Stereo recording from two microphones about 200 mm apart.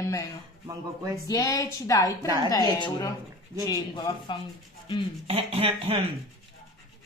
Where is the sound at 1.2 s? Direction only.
20° left (ahead or behind).